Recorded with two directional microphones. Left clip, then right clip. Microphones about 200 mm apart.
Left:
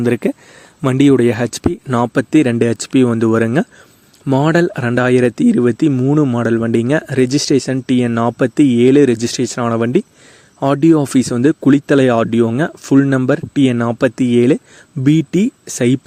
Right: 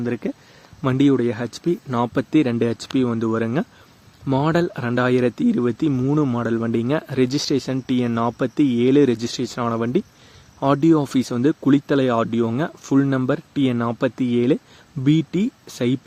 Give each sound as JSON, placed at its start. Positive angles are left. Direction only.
{"t": 0.0, "sound": "speech", "side_deg": 45}